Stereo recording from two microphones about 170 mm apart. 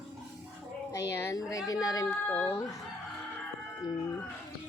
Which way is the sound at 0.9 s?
15° left (ahead or behind).